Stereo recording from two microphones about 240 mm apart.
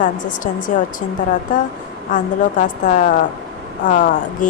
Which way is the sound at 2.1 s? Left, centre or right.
Left.